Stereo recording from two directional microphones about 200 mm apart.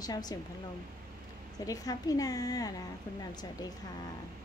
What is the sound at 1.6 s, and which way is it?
A woman's voice, 20° left (ahead or behind).